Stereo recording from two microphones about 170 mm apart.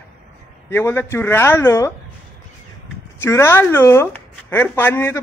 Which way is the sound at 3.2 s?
15° left (ahead or behind).